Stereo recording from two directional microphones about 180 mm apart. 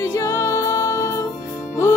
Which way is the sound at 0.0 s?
15° left (ahead or behind).